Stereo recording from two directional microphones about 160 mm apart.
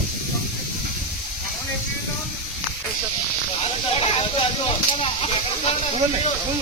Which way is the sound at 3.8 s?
40° left (ahead or behind).